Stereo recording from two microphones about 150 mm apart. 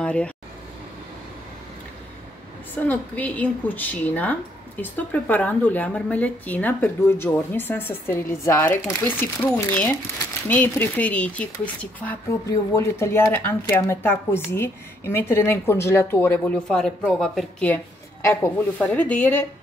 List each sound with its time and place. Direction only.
0.0 s speech: 5° left (ahead or behind)
2.7 s a woman's voice: 10° left (ahead or behind)
16.6 s a woman's voice: 5° left (ahead or behind)